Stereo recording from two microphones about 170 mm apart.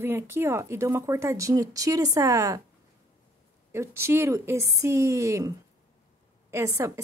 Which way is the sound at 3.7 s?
15° right (ahead or behind).